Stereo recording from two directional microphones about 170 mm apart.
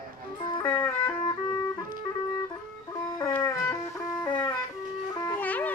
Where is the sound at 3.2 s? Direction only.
20° left (ahead or behind).